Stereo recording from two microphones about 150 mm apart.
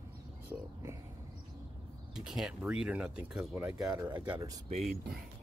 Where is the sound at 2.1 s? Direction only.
5° right (ahead or behind).